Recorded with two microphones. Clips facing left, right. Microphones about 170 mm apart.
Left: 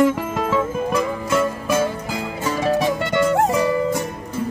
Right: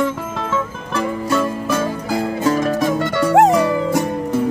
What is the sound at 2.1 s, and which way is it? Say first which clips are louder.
Music: right 7 dB; 40° right (ahead or behind).